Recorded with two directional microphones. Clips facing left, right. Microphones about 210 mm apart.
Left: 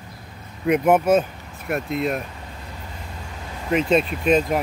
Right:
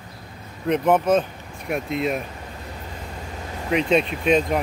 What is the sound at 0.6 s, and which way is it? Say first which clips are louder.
Speech: left 2 dB; 10° left (ahead or behind).